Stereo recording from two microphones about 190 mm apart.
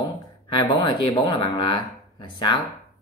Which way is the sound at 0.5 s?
25° left (ahead or behind).